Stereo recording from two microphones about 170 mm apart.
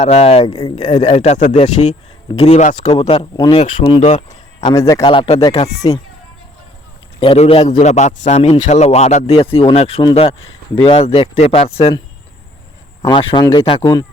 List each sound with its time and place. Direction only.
0.0 s a man's voice: 35° left (ahead or behind)
3.2 s a man's voice: 25° left (ahead or behind)
4.0 s a sound: 40° left (ahead or behind)
4.7 s a man's voice: 15° left (ahead or behind)
5.0 s a man's voice: 30° left (ahead or behind)
7.2 s a man's voice: 35° left (ahead or behind)
13.0 s speech: 30° left (ahead or behind)